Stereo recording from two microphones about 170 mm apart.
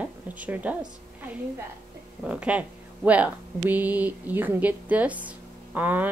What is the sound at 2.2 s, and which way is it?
Speech, 5° right (ahead or behind).